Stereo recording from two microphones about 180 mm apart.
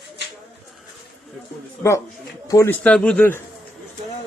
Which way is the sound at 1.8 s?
15° left (ahead or behind).